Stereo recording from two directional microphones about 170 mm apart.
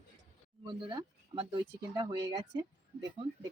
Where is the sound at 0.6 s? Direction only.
25° right (ahead or behind).